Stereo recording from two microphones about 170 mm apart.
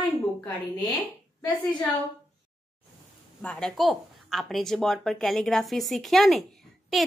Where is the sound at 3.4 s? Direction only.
5° left (ahead or behind).